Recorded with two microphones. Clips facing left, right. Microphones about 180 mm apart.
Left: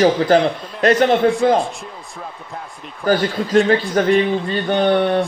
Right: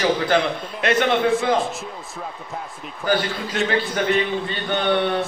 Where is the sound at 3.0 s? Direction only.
40° left (ahead or behind).